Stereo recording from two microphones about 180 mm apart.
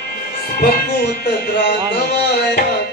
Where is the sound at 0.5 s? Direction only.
65° left (ahead or behind).